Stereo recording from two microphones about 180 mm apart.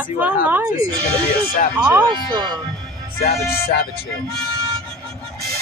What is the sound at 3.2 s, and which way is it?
Music, 55° left (ahead or behind).